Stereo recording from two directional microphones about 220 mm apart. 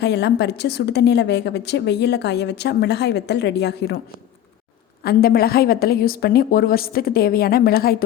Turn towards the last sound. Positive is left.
turn(degrees=45)  # may be behind; listen again after turning